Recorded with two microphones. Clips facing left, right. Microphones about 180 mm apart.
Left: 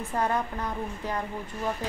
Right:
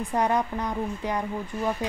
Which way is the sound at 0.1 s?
15° right (ahead or behind).